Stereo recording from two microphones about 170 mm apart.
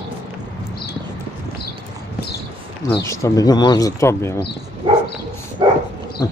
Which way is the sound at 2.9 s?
20° left (ahead or behind).